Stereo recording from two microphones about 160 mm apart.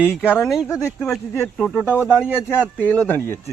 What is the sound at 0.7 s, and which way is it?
Speech, 20° left (ahead or behind).